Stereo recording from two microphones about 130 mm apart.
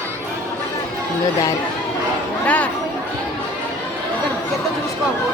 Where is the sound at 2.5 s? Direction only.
10° left (ahead or behind).